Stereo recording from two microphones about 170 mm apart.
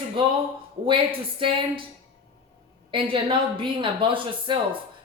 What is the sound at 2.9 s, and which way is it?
Speech, 30° right (ahead or behind).